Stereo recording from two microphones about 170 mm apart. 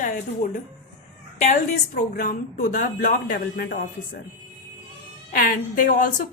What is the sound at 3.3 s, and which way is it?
Speech, 90° left.